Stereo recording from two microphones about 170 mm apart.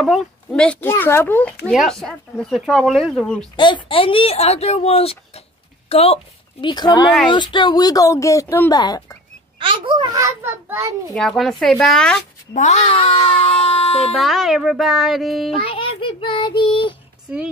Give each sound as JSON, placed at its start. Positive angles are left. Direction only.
{"t": 0.0, "sound": "speech", "side_deg": 0}
{"t": 1.7, "sound": "speech", "side_deg": 0}
{"t": 3.5, "sound": "speech", "side_deg": 25}
{"t": 6.6, "sound": "speech", "side_deg": 25}
{"t": 9.6, "sound": "a child's voice", "side_deg": -30}
{"t": 10.1, "sound": "a child's voice", "side_deg": -15}
{"t": 11.1, "sound": "speech", "side_deg": 0}
{"t": 12.5, "sound": "speech", "side_deg": 40}
{"t": 14.1, "sound": "speech", "side_deg": 0}
{"t": 15.6, "sound": "speech", "side_deg": 30}